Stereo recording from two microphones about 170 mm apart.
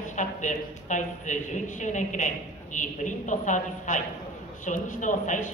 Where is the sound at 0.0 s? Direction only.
45° left (ahead or behind).